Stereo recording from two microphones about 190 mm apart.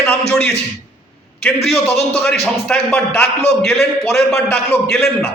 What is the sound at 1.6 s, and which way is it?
A man's voice, 5° left (ahead or behind).